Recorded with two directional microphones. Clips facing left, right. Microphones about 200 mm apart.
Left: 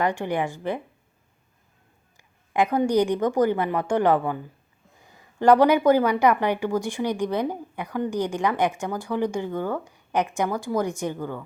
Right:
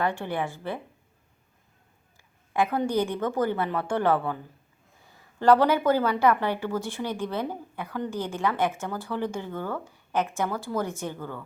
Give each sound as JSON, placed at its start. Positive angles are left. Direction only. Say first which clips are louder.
{"t": 0.0, "sound": "speech", "louder": "left 4 dB", "side_deg": 15}
{"t": 2.5, "sound": "speech", "louder": "left 4 dB", "side_deg": 15}